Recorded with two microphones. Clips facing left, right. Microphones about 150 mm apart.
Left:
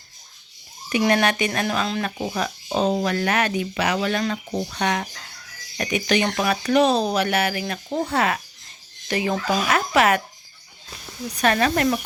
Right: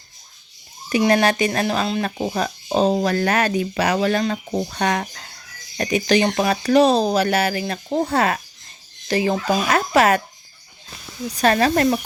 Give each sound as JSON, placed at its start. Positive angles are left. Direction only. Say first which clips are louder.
{"t": 0.9, "sound": "speech", "louder": "right 3 dB", "side_deg": -35}
{"t": 4.2, "sound": "speech", "louder": "right 3 dB", "side_deg": -25}
{"t": 4.7, "sound": "speech", "louder": "right 2 dB", "side_deg": -40}
{"t": 11.3, "sound": "speech", "louder": "right 3 dB", "side_deg": -35}